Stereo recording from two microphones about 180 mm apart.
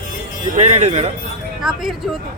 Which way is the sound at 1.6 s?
Centre (ahead or behind).